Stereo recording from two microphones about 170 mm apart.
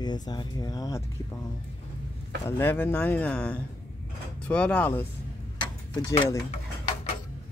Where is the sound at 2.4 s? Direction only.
10° left (ahead or behind).